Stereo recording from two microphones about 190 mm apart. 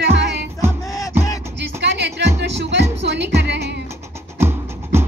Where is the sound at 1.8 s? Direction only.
65° right (ahead or behind).